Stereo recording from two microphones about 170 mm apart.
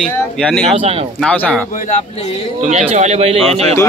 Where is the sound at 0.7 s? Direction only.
35° right (ahead or behind).